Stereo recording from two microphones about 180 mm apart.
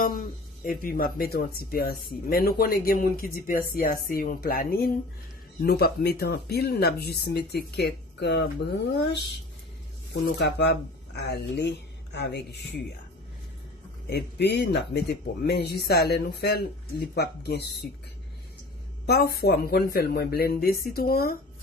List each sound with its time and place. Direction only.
0.0 s speech: 55° left (ahead or behind)
14.0 s speech: 65° left (ahead or behind)
19.0 s speech: 60° left (ahead or behind)